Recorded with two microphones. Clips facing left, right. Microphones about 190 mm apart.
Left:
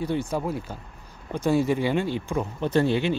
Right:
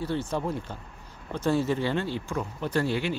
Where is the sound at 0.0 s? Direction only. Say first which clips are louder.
Left 3 dB; 15° left (ahead or behind).